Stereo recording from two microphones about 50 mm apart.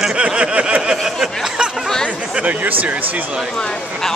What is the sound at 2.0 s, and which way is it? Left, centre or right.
Speech, right.